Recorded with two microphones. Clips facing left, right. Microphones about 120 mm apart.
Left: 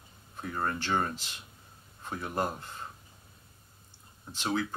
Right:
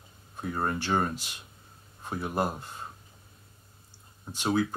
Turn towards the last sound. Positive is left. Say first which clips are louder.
# right 4 dB
turn(degrees=-10)  # may be behind; listen again after turning